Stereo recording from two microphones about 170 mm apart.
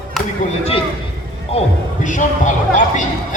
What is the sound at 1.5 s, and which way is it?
Music, 35° left (ahead or behind).